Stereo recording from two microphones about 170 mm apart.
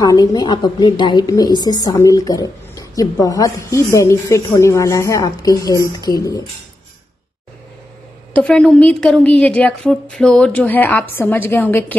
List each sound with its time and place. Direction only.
0.0 s a woman's voice: 20° left (ahead or behind)
8.3 s a woman's voice: 5° left (ahead or behind)